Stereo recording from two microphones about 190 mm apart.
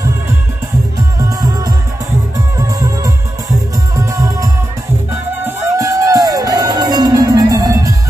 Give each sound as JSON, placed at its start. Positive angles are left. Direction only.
{"t": 1.4, "sound": "music", "side_deg": -20}